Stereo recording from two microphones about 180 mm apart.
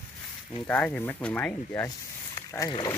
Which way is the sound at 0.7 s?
10° left (ahead or behind).